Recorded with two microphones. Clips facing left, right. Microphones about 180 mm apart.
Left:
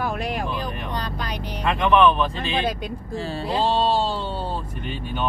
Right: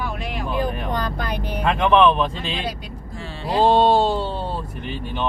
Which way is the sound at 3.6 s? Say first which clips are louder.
Right 6 dB; 55° right (ahead or behind).